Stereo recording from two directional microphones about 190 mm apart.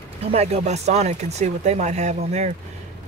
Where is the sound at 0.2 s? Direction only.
35° right (ahead or behind).